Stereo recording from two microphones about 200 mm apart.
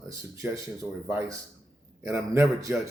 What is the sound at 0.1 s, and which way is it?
Speech, 15° right (ahead or behind).